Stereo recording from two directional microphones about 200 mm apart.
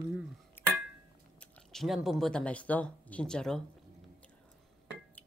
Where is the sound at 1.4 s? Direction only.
Centre (ahead or behind).